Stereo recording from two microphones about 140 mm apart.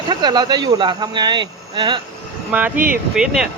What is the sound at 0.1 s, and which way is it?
Speech, 30° right (ahead or behind).